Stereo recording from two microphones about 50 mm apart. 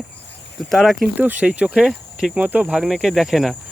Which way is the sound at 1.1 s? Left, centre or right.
Right.